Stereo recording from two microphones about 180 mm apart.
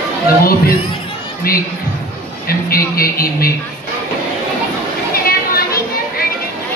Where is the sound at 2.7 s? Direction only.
55° left (ahead or behind).